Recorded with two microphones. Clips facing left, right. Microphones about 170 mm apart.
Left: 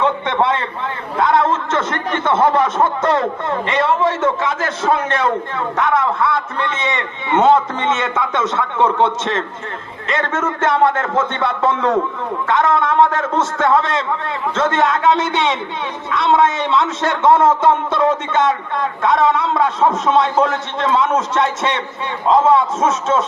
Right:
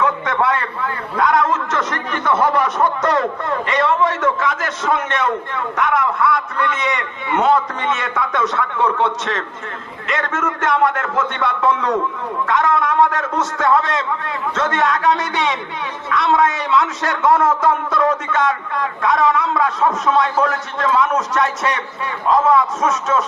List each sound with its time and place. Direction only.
0.0 s a man's voice: 25° left (ahead or behind)